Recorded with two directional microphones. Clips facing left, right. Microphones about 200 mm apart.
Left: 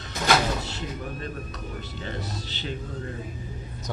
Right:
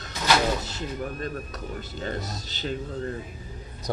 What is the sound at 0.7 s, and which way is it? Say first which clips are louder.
Speech: right 2 dB; 40° right (ahead or behind).